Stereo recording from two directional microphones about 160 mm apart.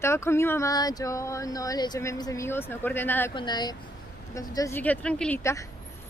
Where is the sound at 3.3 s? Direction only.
25° left (ahead or behind).